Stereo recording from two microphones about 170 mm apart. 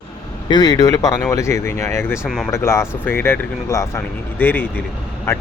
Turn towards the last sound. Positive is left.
turn(degrees=15)  # may be behind; listen again after turning